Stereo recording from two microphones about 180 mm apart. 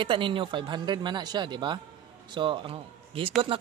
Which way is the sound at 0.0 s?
30° right (ahead or behind).